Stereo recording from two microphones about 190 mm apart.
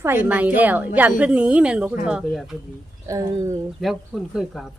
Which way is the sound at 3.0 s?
15° right (ahead or behind).